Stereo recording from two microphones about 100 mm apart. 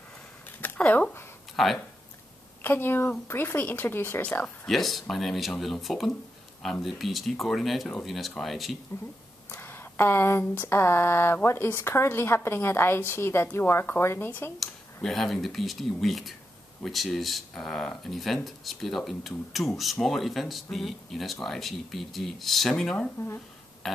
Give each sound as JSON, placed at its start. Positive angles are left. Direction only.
{"t": 0.6, "sound": "speech", "side_deg": 15}
{"t": 1.6, "sound": "speech", "side_deg": 0}
{"t": 2.6, "sound": "speech", "side_deg": 20}
{"t": 4.6, "sound": "speech", "side_deg": 0}
{"t": 9.5, "sound": "speech", "side_deg": 20}
{"t": 14.6, "sound": "speech", "side_deg": 5}